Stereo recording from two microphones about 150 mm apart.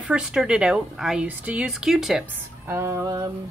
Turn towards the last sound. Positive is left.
turn(degrees=-20)  # may be behind; listen again after turning